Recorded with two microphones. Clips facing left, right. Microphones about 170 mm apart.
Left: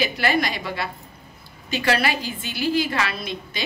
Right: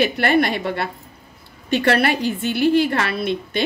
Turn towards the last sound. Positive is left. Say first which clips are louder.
# right 9 dB
turn(degrees=-60)  # may be behind; listen again after turning